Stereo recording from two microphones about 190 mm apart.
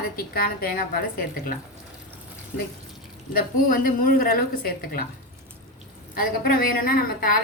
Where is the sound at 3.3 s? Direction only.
50° left (ahead or behind).